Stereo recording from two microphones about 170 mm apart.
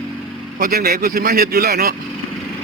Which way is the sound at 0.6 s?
65° right (ahead or behind).